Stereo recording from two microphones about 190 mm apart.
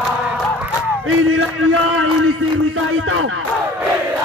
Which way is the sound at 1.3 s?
90° right.